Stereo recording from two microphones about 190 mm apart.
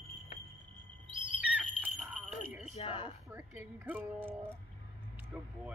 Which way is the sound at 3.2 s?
10° right (ahead or behind).